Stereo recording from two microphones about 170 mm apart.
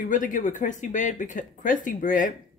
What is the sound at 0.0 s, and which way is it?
A woman's voice, 50° left (ahead or behind).